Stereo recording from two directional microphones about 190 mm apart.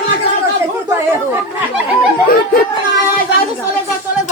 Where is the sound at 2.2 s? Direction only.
50° left (ahead or behind).